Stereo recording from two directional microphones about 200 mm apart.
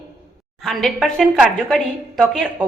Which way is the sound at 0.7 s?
Centre (ahead or behind).